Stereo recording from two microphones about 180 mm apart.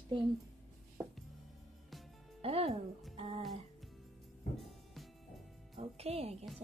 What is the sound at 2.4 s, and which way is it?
Music, 35° right (ahead or behind).